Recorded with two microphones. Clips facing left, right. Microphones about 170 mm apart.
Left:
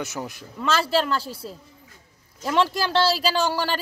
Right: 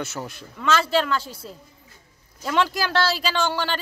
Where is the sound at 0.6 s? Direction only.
35° left (ahead or behind).